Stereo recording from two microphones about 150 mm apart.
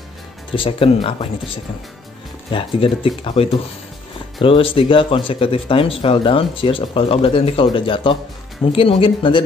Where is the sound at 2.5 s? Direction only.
35° left (ahead or behind).